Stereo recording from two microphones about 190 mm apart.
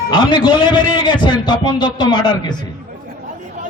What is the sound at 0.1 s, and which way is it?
A man's voice, 25° left (ahead or behind).